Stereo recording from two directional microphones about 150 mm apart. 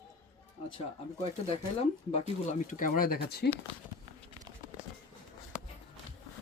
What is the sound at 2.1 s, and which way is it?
Speech, 50° left (ahead or behind).